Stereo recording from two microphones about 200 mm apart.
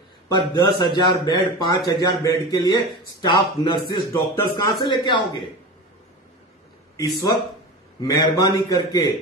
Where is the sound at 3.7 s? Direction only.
25° left (ahead or behind).